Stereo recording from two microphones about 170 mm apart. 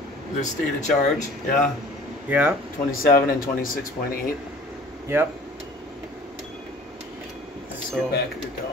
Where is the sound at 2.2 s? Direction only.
10° right (ahead or behind).